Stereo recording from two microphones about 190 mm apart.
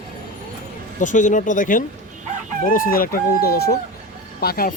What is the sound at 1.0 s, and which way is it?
Speech, 40° left (ahead or behind).